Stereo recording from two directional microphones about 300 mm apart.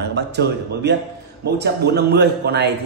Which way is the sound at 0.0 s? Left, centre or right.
Right.